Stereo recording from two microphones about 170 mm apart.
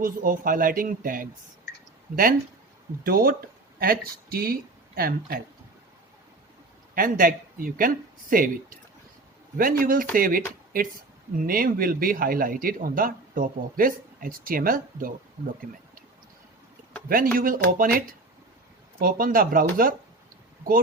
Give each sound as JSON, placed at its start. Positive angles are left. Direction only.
{"t": 0.0, "sound": "speech", "side_deg": -55}
{"t": 3.0, "sound": "speech", "side_deg": -60}
{"t": 6.9, "sound": "speech", "side_deg": -55}
{"t": 17.3, "sound": "speech", "side_deg": -55}